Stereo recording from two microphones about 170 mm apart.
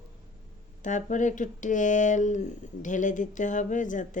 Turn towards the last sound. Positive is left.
turn(degrees=50)  # may be behind; listen again after turning